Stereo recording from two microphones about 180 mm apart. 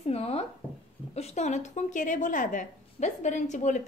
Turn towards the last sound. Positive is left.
turn(degrees=40)  # may be behind; listen again after turning